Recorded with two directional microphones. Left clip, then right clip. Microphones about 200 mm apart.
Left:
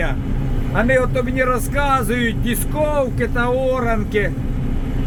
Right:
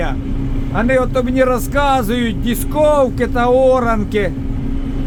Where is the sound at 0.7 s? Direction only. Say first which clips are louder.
Right 2 dB; 10° right (ahead or behind).